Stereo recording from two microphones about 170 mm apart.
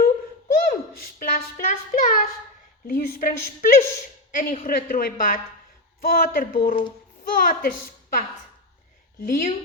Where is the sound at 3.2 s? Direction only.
55° left (ahead or behind).